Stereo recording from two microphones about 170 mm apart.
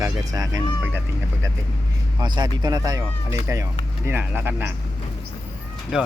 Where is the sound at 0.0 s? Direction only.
20° right (ahead or behind).